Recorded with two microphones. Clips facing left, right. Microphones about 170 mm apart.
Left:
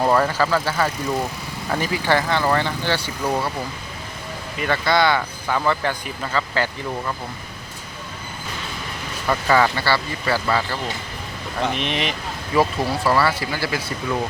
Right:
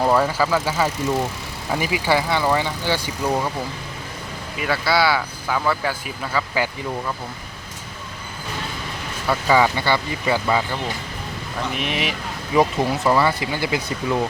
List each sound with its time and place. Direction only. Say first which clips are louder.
0.0 s speech: even; 5° right (ahead or behind)
4.5 s speech: left 1 dB; 5° right (ahead or behind)
9.2 s speech: even; 10° right (ahead or behind)
11.8 s speech: even; 5° right (ahead or behind)
12.5 s speech: right 1 dB; 20° right (ahead or behind)